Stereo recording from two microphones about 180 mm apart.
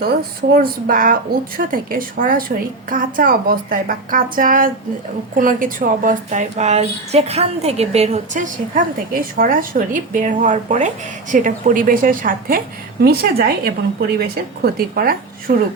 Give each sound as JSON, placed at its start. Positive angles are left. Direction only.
{"t": 0.5, "sound": "a woman's voice", "side_deg": -50}